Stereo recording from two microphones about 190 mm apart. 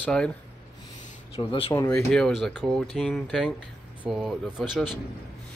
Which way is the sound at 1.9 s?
5° left (ahead or behind).